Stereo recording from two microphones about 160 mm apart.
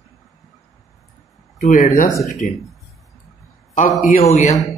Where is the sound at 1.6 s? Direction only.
55° left (ahead or behind).